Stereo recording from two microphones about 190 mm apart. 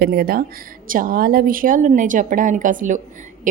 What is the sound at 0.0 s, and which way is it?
A woman's voice, 55° right (ahead or behind).